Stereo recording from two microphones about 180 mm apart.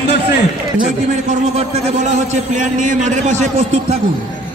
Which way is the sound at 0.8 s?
40° right (ahead or behind).